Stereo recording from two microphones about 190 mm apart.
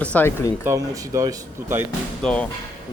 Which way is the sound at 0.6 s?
15° right (ahead or behind).